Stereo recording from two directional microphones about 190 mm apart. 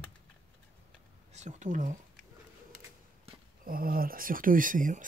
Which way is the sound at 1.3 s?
40° right (ahead or behind).